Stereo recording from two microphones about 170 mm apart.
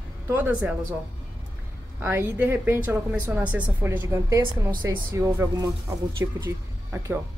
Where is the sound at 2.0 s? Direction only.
10° right (ahead or behind).